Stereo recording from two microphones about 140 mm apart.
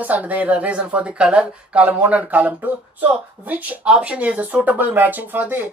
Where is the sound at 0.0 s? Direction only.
10° right (ahead or behind).